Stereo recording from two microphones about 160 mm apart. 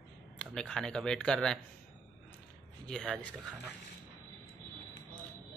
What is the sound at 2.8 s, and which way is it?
Speech, 5° left (ahead or behind).